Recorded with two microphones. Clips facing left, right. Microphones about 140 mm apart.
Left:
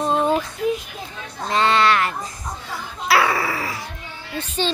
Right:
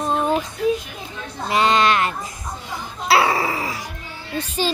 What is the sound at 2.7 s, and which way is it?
Dog, 25° right (ahead or behind).